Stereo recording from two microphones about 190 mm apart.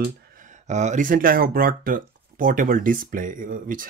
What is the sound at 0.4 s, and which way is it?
Speech, 40° right (ahead or behind).